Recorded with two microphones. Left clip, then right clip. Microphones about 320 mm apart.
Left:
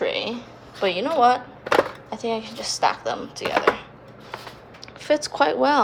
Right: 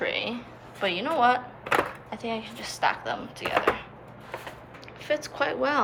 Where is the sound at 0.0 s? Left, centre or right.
Centre.